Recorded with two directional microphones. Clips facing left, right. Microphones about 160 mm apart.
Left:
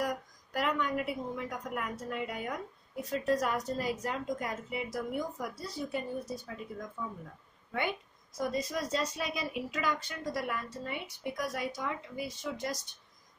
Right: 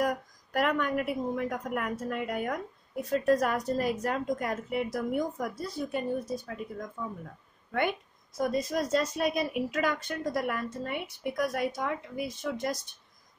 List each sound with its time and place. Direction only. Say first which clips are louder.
0.0 s a woman's voice: right 5 dB; 55° right (ahead or behind)
8.4 s speech: right 4 dB; 50° right (ahead or behind)